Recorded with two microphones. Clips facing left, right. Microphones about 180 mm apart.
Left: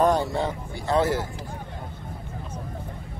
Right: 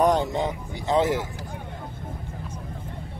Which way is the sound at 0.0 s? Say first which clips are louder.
Even; 20° right (ahead or behind).